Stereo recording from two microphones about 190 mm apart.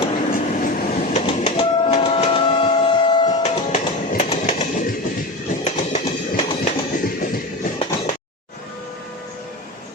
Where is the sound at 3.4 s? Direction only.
40° left (ahead or behind).